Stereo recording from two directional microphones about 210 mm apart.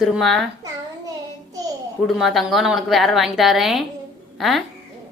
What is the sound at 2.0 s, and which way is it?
A woman's voice, centre (ahead or behind).